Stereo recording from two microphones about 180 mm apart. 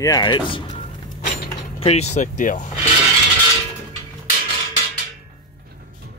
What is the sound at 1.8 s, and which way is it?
Speech, 35° left (ahead or behind).